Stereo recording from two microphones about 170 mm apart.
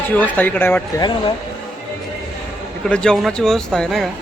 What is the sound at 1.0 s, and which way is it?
Speech, 25° left (ahead or behind).